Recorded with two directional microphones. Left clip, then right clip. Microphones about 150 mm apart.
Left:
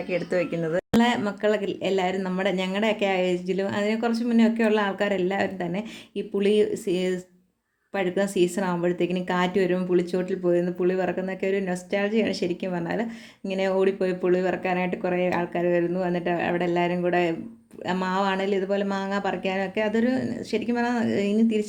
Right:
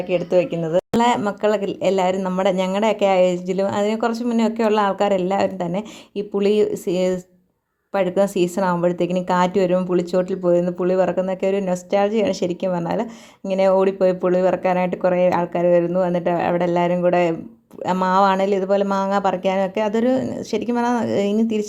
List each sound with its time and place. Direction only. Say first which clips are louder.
0.1 s speech: right 7 dB; 20° right (ahead or behind); by 21.7 s 35° right (ahead or behind)